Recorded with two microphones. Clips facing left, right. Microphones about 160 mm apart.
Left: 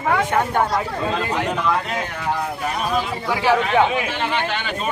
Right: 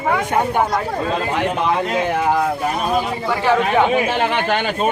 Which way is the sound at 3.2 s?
10° left (ahead or behind).